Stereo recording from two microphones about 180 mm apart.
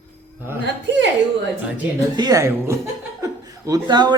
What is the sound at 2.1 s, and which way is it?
A man's voice, 20° right (ahead or behind).